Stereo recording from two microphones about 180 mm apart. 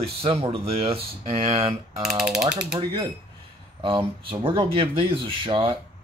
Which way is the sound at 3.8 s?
30° right (ahead or behind).